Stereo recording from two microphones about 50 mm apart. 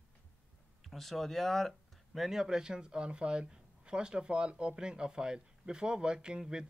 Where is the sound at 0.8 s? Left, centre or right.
Centre.